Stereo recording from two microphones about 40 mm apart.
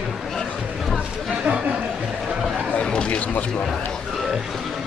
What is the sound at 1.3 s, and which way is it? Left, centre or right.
Chatter, right.